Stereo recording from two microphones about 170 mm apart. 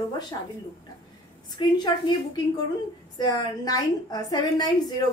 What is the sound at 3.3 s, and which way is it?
A woman's voice, 20° left (ahead or behind).